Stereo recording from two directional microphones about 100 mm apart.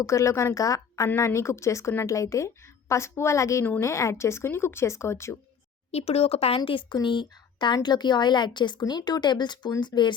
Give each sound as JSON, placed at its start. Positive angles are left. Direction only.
{"t": 0.0, "sound": "speech", "side_deg": 30}
{"t": 5.9, "sound": "speech", "side_deg": 90}
{"t": 6.7, "sound": "speech", "side_deg": 55}